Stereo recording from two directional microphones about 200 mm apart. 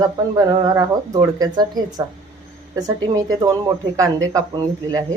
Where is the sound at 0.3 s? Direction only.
20° right (ahead or behind).